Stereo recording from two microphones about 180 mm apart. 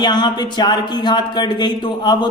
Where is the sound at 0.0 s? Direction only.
25° left (ahead or behind).